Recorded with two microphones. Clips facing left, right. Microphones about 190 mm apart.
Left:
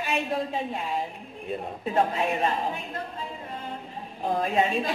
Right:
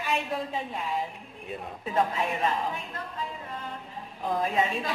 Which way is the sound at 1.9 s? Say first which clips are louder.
Left 2 dB; 25° left (ahead or behind).